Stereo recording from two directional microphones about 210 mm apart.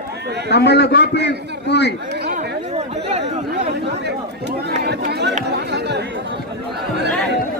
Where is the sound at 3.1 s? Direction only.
30° right (ahead or behind).